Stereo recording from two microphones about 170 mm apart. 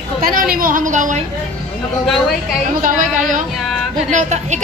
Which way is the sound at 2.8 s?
50° right (ahead or behind).